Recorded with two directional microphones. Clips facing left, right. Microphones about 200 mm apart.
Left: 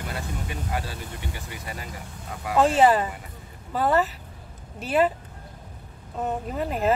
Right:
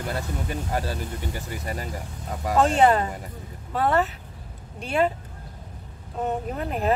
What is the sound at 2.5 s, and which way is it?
Speech, centre (ahead or behind).